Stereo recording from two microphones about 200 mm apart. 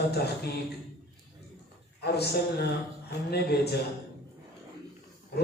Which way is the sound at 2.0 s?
55° left (ahead or behind).